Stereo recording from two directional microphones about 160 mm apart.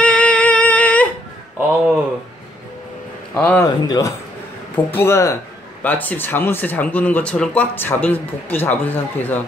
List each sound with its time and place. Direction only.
0.0 s music: 5° left (ahead or behind)
3.3 s speech: 10° left (ahead or behind)
3.6 s a man's voice: 25° left (ahead or behind)